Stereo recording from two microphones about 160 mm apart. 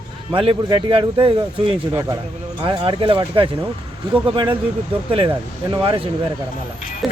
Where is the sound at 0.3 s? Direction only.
30° right (ahead or behind).